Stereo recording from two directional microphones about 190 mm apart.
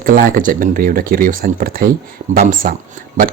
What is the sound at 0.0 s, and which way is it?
Speech, 50° right (ahead or behind).